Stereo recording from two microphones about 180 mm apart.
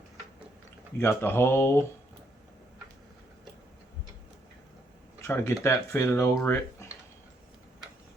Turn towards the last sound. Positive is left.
turn(degrees=15)  # may be behind; listen again after turning